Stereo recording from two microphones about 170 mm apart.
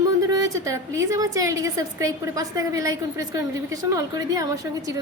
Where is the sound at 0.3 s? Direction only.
20° right (ahead or behind).